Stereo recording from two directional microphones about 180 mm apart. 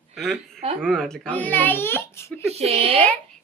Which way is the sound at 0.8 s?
5° left (ahead or behind).